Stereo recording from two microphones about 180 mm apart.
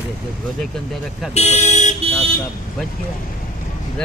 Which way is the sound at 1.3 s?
40° left (ahead or behind).